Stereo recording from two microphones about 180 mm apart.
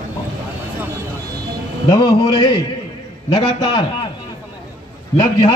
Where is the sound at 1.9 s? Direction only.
25° left (ahead or behind).